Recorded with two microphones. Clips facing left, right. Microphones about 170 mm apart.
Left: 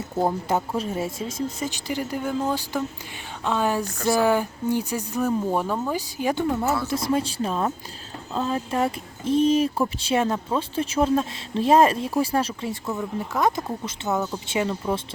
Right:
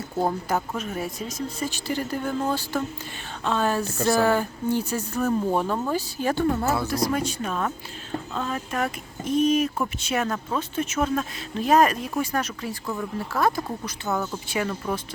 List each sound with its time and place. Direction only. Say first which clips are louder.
0.4 s speech: left 2 dB; 25° left (ahead or behind)
12.8 s speech: even; 5° left (ahead or behind)
13.1 s speech: even; 20° left (ahead or behind)